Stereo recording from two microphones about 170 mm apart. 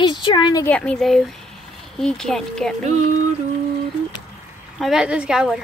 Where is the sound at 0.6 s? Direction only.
5° left (ahead or behind).